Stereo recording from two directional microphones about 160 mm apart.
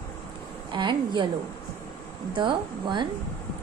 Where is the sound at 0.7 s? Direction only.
30° right (ahead or behind).